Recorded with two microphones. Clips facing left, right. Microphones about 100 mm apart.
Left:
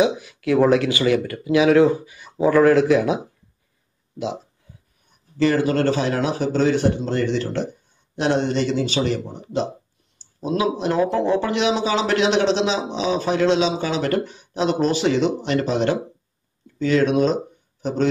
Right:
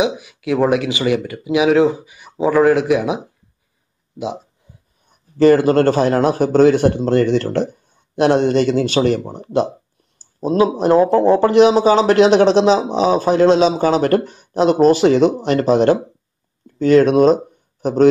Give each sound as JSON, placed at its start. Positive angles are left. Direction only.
{"t": 0.0, "sound": "speech", "side_deg": -15}
{"t": 5.4, "sound": "speech", "side_deg": -45}
{"t": 10.1, "sound": "speech", "side_deg": -40}